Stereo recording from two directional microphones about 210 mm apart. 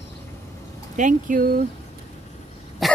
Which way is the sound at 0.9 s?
40° right (ahead or behind).